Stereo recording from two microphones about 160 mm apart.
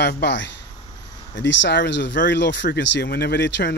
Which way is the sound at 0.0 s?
90° left.